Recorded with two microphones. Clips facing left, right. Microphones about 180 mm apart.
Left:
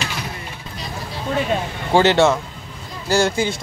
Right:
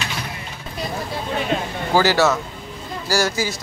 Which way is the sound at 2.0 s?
25° left (ahead or behind).